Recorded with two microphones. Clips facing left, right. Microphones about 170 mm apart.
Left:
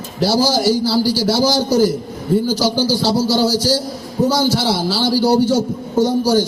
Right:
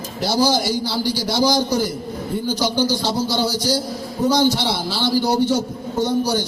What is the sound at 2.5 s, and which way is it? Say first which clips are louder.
A man's voice: left 3 dB; 40° left (ahead or behind).